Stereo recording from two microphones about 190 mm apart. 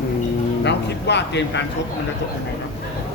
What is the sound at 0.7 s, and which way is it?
Speech, 65° left (ahead or behind).